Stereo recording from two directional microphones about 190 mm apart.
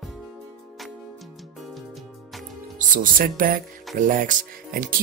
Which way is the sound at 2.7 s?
45° right (ahead or behind).